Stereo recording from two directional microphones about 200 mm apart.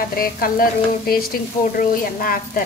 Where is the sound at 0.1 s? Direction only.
45° left (ahead or behind).